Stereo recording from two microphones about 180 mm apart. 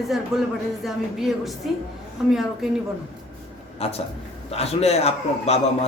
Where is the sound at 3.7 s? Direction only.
35° left (ahead or behind).